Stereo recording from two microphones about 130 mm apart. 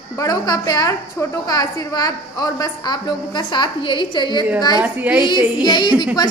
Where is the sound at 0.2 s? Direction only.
30° left (ahead or behind).